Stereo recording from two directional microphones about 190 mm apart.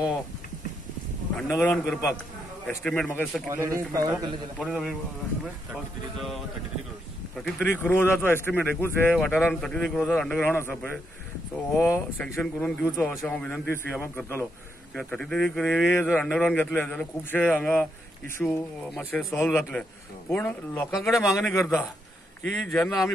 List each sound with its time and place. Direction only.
1.3 s speech: centre (ahead or behind)
3.4 s a man's voice: 15° right (ahead or behind)
4.6 s speech: centre (ahead or behind)
7.4 s speech: centre (ahead or behind)
7.9 s speech: 10° left (ahead or behind)
18.9 s speech: 10° left (ahead or behind)
20.9 s speech: centre (ahead or behind)
21.5 s speech: 15° left (ahead or behind)